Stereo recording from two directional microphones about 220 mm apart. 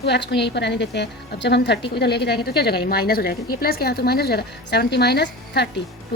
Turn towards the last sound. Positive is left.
turn(degrees=50)  # may be behind; listen again after turning